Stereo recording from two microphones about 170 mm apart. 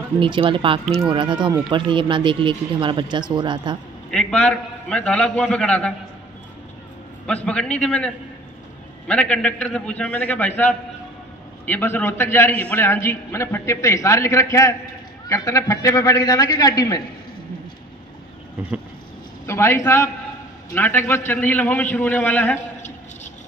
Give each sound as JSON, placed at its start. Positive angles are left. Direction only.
{"t": 0.2, "sound": "speech", "side_deg": -30}
{"t": 4.1, "sound": "a man's voice", "side_deg": 5}
{"t": 7.4, "sound": "a man's voice", "side_deg": 5}
{"t": 19.4, "sound": "a man's voice", "side_deg": 15}